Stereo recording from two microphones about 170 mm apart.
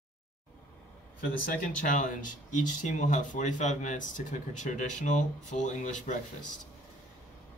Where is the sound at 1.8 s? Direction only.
50° left (ahead or behind).